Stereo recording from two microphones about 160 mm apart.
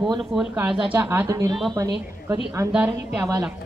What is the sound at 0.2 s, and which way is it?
Speech, centre (ahead or behind).